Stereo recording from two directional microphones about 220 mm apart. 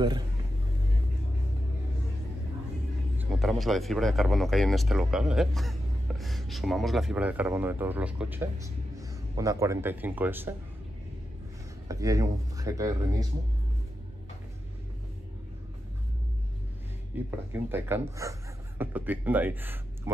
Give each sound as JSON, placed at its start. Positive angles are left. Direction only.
{"t": 3.2, "sound": "speech", "side_deg": 0}
{"t": 11.9, "sound": "speech", "side_deg": -15}
{"t": 17.1, "sound": "speech", "side_deg": -10}